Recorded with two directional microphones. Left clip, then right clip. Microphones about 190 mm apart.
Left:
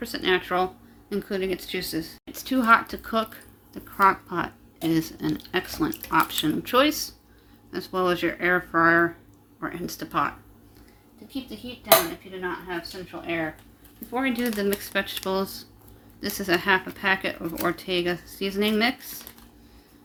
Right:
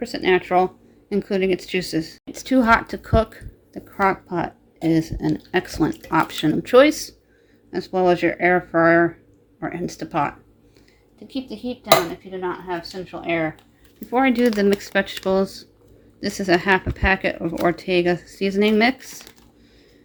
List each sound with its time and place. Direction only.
0.0 s speech: 20° right (ahead or behind)
12.3 s speech: 50° right (ahead or behind)
14.1 s speech: 35° right (ahead or behind)